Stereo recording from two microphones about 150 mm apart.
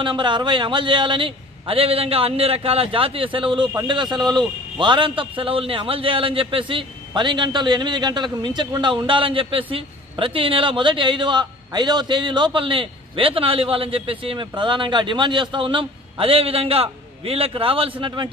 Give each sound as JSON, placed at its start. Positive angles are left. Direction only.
{"t": 0.0, "sound": "a man's voice", "side_deg": -30}